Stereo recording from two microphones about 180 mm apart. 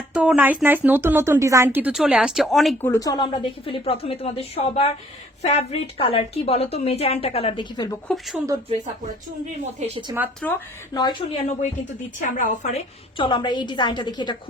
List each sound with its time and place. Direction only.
0.1 s speech: 5° right (ahead or behind)
2.8 s a woman's voice: 15° left (ahead or behind)
8.0 s a woman's voice: centre (ahead or behind)
9.8 s speech: 40° right (ahead or behind)
10.4 s speech: 5° left (ahead or behind)
10.9 s a woman's voice: 25° left (ahead or behind)
12.2 s a woman's voice: 45° left (ahead or behind)
13.1 s a woman's voice: 25° left (ahead or behind)